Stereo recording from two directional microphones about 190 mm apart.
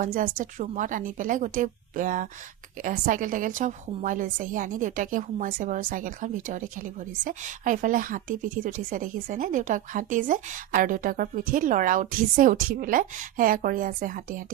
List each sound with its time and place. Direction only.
0.0 s a woman's voice: 45° right (ahead or behind)